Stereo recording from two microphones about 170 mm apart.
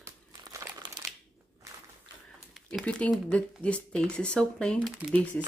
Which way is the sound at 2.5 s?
Centre (ahead or behind).